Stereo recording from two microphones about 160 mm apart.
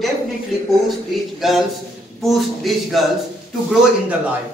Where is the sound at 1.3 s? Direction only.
Centre (ahead or behind).